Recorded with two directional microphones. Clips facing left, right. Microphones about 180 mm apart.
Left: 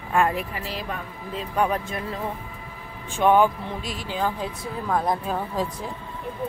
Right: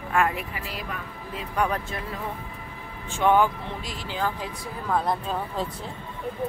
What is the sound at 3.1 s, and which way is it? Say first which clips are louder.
Speech: left 2 dB; 15° left (ahead or behind).